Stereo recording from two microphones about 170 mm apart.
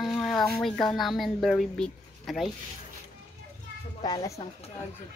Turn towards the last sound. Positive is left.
turn(degrees=20)  # may be behind; listen again after turning